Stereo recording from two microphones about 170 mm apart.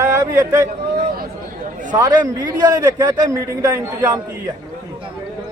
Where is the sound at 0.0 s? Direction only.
20° right (ahead or behind).